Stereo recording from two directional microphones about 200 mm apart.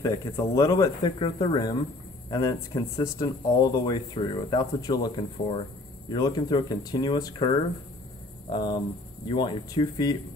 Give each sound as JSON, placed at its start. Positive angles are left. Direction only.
{"t": 0.0, "sound": "speech", "side_deg": 15}
{"t": 8.5, "sound": "speech", "side_deg": 20}